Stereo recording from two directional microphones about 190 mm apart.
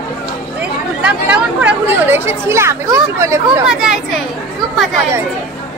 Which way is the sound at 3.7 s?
Centre (ahead or behind).